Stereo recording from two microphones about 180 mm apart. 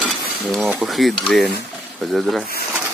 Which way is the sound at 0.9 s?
Centre (ahead or behind).